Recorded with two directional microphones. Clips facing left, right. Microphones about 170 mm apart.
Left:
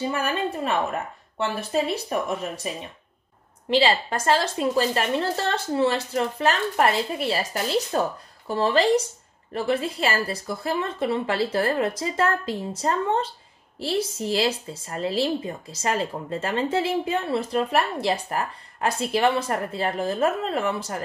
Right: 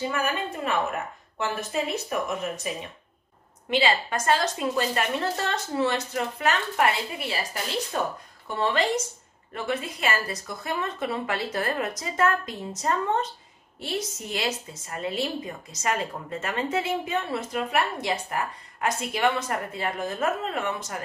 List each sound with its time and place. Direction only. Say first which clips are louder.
1.4 s a woman's voice: left 3 dB; 30° left (ahead or behind)
3.7 s a woman's voice: left 3 dB; 30° left (ahead or behind)